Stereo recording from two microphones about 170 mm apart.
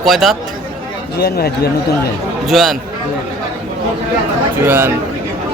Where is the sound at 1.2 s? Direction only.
70° left (ahead or behind).